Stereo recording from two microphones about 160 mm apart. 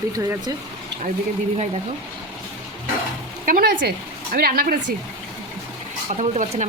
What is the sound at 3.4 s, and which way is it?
Speech, 70° right (ahead or behind).